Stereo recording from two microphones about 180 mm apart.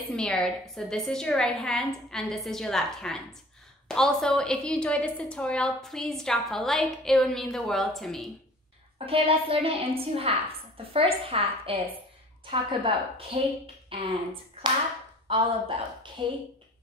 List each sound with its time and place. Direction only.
0.1 s a woman's voice: 5° left (ahead or behind)
8.9 s a woman's voice: 30° right (ahead or behind)